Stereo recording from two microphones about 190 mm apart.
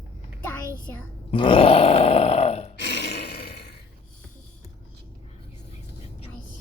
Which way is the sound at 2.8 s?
65° left (ahead or behind).